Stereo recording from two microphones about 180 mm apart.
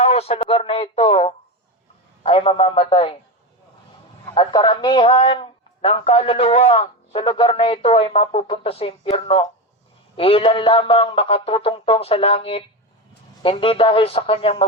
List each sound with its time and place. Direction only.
0.0 s a man's voice: 35° left (ahead or behind)
4.4 s a man's voice: 25° left (ahead or behind)